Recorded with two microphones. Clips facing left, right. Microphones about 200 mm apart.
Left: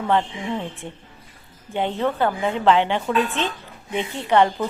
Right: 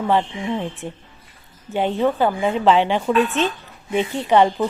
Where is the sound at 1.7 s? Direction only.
15° right (ahead or behind).